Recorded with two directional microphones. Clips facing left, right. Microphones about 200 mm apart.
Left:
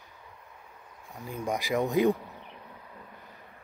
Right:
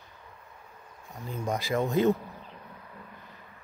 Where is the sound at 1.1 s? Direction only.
10° left (ahead or behind).